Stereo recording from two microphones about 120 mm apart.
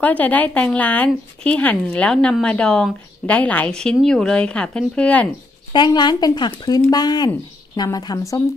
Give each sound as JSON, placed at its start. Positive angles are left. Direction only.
{"t": 0.0, "sound": "a woman's voice", "side_deg": 15}
{"t": 5.7, "sound": "speech", "side_deg": 40}